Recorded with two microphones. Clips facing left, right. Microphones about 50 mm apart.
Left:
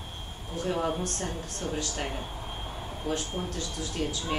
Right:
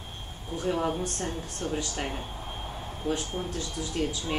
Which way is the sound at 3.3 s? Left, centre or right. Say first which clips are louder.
Right 1 dB; centre.